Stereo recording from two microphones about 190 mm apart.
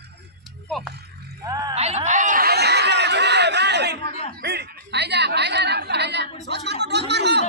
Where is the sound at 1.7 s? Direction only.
35° right (ahead or behind).